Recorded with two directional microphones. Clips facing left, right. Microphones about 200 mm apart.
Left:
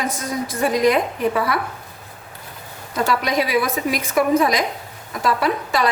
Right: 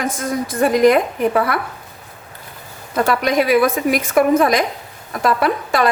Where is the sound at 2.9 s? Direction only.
55° right (ahead or behind).